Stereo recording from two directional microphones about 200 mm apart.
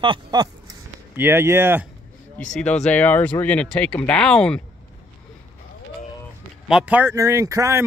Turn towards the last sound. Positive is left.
turn(degrees=-15)  # may be behind; listen again after turning